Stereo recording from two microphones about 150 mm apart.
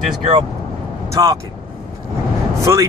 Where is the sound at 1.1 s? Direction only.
20° right (ahead or behind).